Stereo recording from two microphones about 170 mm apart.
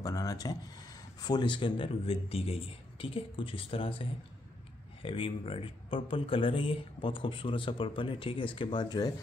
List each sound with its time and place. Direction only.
0.0 s a man's voice: 20° left (ahead or behind)
5.0 s a man's voice: 30° left (ahead or behind)